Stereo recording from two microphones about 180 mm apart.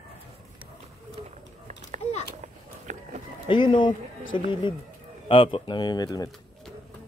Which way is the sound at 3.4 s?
25° left (ahead or behind).